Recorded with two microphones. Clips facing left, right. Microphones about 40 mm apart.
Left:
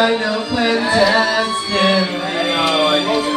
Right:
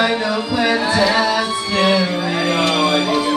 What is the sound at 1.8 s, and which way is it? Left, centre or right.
Music, left.